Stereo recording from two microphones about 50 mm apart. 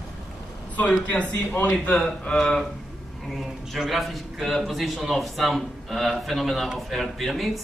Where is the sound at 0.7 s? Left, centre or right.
Left.